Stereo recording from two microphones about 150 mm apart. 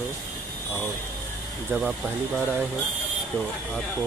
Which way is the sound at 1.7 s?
10° right (ahead or behind).